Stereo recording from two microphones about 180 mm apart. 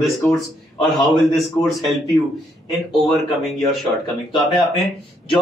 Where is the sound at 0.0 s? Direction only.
Centre (ahead or behind).